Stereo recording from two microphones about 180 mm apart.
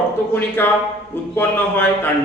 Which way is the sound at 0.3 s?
10° left (ahead or behind).